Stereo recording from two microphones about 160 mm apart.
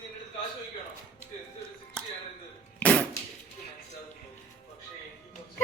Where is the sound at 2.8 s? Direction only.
10° left (ahead or behind).